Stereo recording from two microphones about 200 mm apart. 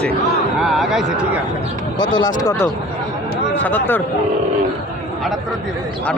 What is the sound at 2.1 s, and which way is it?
Speech, 20° left (ahead or behind).